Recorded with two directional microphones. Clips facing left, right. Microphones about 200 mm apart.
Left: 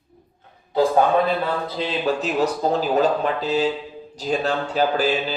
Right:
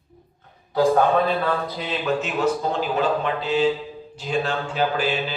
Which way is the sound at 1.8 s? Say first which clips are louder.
Left 2 dB; 35° left (ahead or behind).